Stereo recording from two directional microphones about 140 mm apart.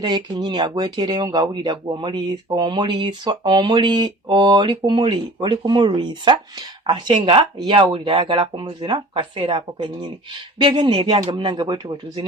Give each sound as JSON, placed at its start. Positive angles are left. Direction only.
{"t": 0.0, "sound": "speech", "side_deg": -30}